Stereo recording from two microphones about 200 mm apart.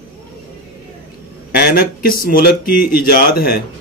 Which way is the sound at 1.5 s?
50° left (ahead or behind).